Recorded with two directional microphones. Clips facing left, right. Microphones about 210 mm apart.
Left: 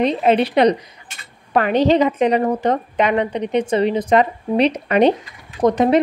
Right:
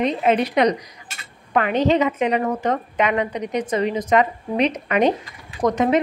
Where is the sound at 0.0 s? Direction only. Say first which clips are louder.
Left 3 dB; 30° left (ahead or behind).